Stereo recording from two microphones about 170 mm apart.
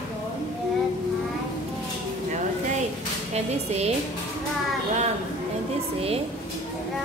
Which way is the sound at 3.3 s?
40° right (ahead or behind).